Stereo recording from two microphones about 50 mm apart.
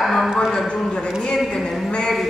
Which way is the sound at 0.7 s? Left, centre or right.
Centre.